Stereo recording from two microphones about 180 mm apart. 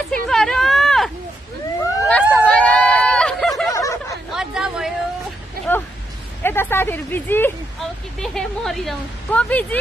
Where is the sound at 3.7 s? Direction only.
15° left (ahead or behind).